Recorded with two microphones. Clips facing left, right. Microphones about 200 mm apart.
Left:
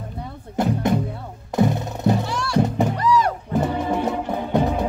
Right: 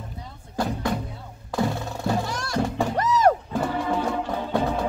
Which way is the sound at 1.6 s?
20° left (ahead or behind).